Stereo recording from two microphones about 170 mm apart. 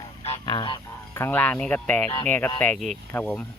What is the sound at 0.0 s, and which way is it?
Honk, 35° left (ahead or behind).